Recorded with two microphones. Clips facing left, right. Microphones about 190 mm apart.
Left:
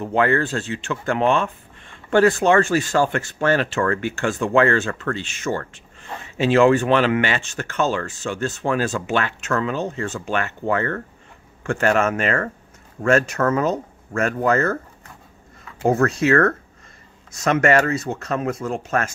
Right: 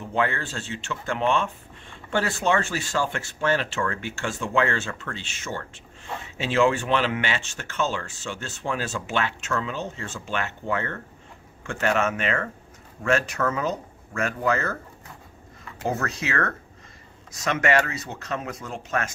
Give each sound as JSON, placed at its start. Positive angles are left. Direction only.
{"t": 0.1, "sound": "speech", "side_deg": 55}
{"t": 15.8, "sound": "speech", "side_deg": 50}